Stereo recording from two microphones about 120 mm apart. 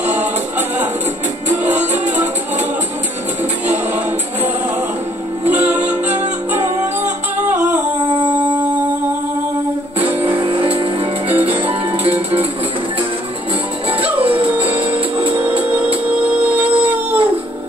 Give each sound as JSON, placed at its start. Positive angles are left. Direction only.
{"t": 0.0, "sound": "music", "side_deg": -15}
{"t": 1.6, "sound": "music", "side_deg": -80}
{"t": 3.7, "sound": "music", "side_deg": -15}
{"t": 5.5, "sound": "music", "side_deg": -15}
{"t": 10.0, "sound": "music", "side_deg": -50}
{"t": 13.8, "sound": "music", "side_deg": -50}
{"t": 16.4, "sound": "music", "side_deg": -15}